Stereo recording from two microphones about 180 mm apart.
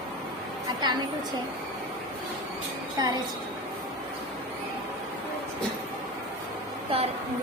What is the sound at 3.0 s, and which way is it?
Speech, 20° right (ahead or behind).